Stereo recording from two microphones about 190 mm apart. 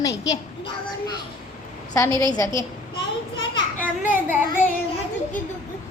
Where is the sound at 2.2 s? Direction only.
20° left (ahead or behind).